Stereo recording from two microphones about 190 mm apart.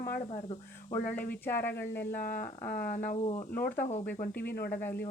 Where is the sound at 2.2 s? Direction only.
45° left (ahead or behind).